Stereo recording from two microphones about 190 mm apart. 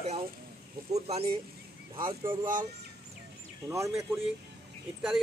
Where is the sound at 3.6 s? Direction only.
20° right (ahead or behind).